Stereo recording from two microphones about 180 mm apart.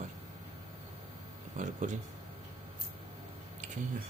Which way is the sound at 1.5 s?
45° right (ahead or behind).